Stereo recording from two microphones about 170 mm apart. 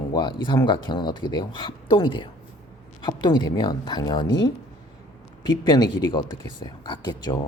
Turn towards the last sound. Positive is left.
turn(degrees=25)  # may be behind; listen again after turning